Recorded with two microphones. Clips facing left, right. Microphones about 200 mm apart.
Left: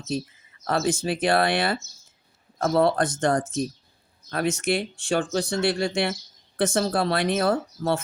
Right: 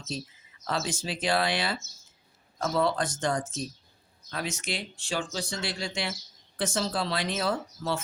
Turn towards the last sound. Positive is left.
turn(degrees=55)  # may be behind; listen again after turning